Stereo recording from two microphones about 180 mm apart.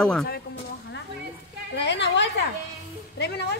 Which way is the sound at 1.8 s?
75° left (ahead or behind).